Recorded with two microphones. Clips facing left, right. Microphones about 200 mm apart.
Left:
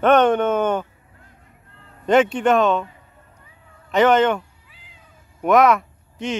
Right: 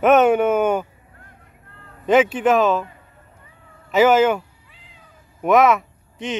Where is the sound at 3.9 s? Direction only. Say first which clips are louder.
Right 1 dB; 5° right (ahead or behind).